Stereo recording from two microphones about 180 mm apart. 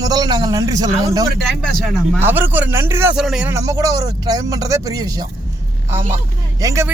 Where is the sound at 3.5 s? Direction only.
20° right (ahead or behind).